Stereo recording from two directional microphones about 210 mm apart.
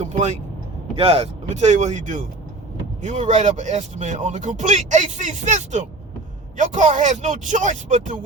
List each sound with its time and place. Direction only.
0.0 s speech: 30° right (ahead or behind)